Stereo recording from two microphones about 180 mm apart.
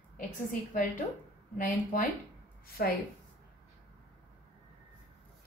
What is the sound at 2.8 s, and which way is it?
Speech, 55° left (ahead or behind).